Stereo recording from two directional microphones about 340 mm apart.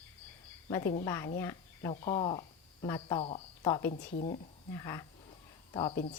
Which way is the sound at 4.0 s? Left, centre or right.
Left.